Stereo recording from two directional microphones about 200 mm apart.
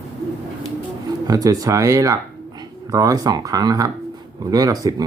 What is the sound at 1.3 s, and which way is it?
Speech, 20° right (ahead or behind).